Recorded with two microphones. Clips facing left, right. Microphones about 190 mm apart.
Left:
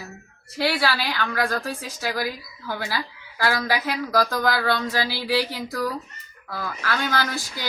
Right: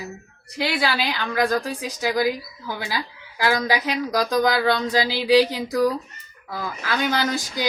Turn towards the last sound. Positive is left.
turn(degrees=-15)  # may be behind; listen again after turning